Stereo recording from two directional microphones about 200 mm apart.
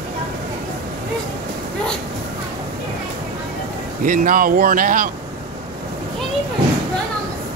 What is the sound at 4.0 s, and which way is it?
Speech, 45° right (ahead or behind).